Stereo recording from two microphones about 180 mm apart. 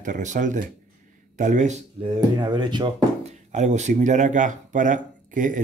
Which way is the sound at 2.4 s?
25° right (ahead or behind).